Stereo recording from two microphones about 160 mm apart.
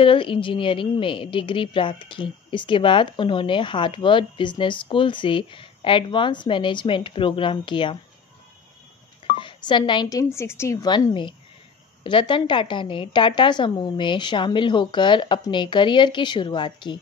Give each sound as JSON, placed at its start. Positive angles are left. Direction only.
{"t": 0.0, "sound": "a woman's voice", "side_deg": 35}
{"t": 9.4, "sound": "a woman's voice", "side_deg": 30}